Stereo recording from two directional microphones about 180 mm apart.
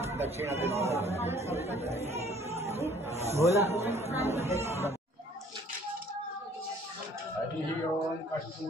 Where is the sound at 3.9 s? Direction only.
35° right (ahead or behind).